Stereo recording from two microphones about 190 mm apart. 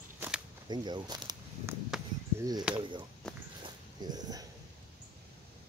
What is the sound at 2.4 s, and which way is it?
Speech, 20° right (ahead or behind).